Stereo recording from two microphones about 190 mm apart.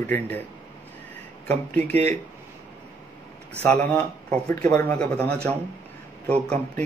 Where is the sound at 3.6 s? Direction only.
10° left (ahead or behind).